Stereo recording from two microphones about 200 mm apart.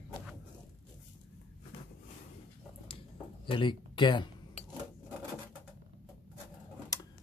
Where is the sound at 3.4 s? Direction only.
25° left (ahead or behind).